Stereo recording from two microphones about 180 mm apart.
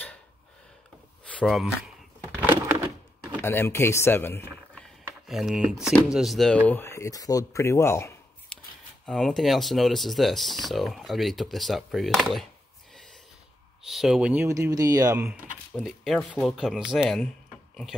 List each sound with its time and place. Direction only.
1.2 s speech: 5° left (ahead or behind)
2.2 s a sound: 10° right (ahead or behind)
3.4 s speech: 15° left (ahead or behind)
5.0 s speech: centre (ahead or behind)
6.7 s speech: 15° left (ahead or behind)
9.0 s speech: centre (ahead or behind)
13.8 s speech: centre (ahead or behind); by 15.2 s 20° right (ahead or behind)
15.7 s speech: centre (ahead or behind)